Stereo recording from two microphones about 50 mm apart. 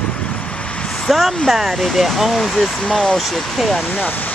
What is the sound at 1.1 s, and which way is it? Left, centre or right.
Speech, centre.